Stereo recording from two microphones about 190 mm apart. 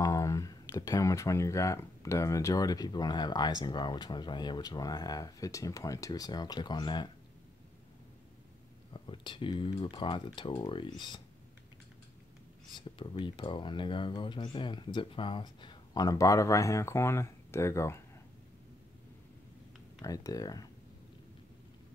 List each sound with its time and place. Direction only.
0.0 s speech: 15° left (ahead or behind)
8.9 s speech: 25° left (ahead or behind)
13.2 s speech: 25° left (ahead or behind)
20.0 s speech: 20° left (ahead or behind)